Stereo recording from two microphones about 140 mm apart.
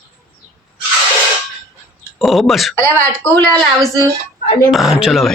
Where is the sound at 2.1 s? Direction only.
Centre (ahead or behind).